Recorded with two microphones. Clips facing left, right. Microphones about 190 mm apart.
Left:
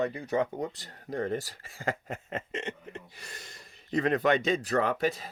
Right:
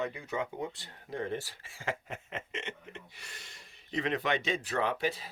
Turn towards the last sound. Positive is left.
turn(degrees=45)  # may be behind; listen again after turning